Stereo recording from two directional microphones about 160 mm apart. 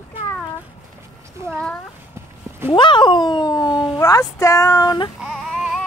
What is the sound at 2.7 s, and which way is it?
Speech, 30° left (ahead or behind).